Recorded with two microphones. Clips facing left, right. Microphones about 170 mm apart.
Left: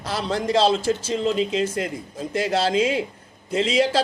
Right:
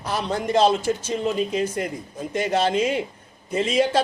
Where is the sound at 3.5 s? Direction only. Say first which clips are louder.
Left 1 dB; 90° left.